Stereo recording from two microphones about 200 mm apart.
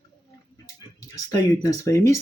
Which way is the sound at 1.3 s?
20° left (ahead or behind).